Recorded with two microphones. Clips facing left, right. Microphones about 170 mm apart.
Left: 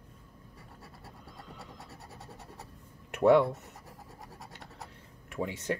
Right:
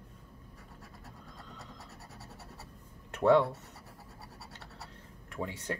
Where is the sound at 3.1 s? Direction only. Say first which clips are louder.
Left 2 dB; 15° left (ahead or behind).